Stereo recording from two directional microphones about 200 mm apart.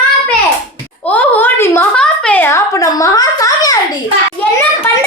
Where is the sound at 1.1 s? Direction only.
10° left (ahead or behind).